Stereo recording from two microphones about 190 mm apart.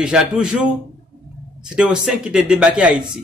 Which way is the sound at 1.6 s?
5° right (ahead or behind).